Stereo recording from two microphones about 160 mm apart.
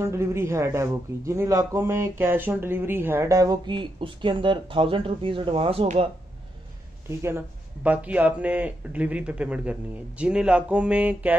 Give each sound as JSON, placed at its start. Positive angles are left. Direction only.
{"t": 0.0, "sound": "speech", "side_deg": -15}
{"t": 7.1, "sound": "speech", "side_deg": -15}